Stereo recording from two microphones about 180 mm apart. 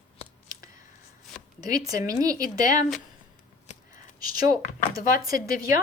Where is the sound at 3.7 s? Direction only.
40° left (ahead or behind).